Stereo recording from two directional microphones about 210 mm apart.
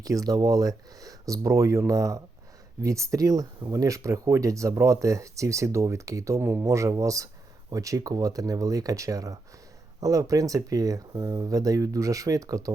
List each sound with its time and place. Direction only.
0.0 s speech: 15° right (ahead or behind)